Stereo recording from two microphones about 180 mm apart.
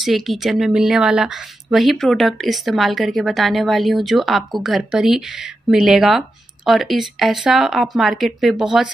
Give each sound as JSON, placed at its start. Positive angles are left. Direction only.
{"t": 0.0, "sound": "a woman's voice", "side_deg": 0}